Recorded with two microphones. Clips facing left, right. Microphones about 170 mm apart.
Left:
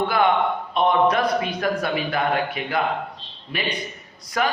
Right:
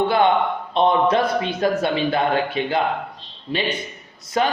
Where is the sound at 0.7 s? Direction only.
25° right (ahead or behind).